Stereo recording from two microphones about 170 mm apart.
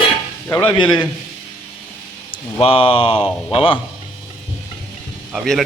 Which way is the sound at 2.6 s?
35° left (ahead or behind).